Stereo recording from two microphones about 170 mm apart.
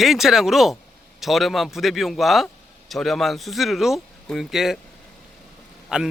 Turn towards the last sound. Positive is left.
turn(degrees=-5)  # may be behind; listen again after turning